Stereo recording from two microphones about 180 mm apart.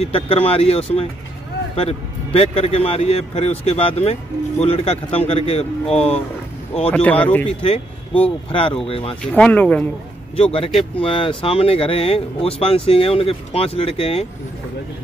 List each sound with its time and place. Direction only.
0.0 s a man's voice: 30° left (ahead or behind)
6.9 s speech: 10° left (ahead or behind)
7.4 s a man's voice: 35° left (ahead or behind)
9.2 s speech: 5° left (ahead or behind)
10.3 s a man's voice: 30° left (ahead or behind)